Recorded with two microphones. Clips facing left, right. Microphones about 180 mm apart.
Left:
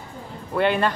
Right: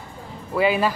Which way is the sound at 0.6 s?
5° right (ahead or behind).